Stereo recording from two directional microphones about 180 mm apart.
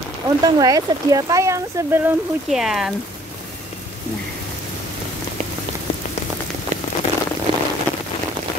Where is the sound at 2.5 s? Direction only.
Centre (ahead or behind).